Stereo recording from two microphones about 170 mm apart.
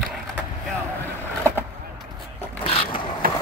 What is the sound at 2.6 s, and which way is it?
Vehicle, 35° left (ahead or behind).